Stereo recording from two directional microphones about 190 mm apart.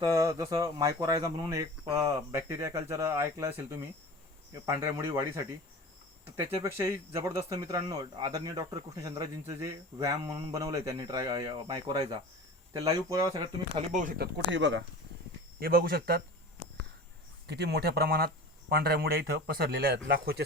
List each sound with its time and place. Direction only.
0.0 s speech: 15° right (ahead or behind)
13.7 s speech: 40° right (ahead or behind)
14.2 s speech: 70° right (ahead or behind)
15.5 s speech: 50° right (ahead or behind)
17.4 s speech: 60° right (ahead or behind)